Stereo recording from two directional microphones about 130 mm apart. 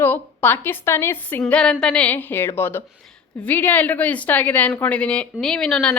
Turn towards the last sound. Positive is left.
turn(degrees=5)  # may be behind; listen again after turning